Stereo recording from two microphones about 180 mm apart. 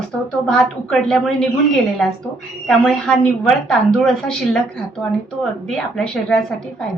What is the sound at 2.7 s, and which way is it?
A woman's voice, 5° left (ahead or behind).